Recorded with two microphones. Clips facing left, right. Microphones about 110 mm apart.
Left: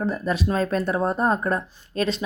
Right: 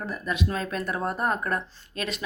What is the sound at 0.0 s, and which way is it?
Speech, 30° left (ahead or behind).